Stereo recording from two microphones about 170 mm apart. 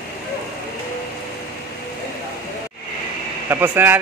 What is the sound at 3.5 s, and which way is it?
Speech, 10° right (ahead or behind).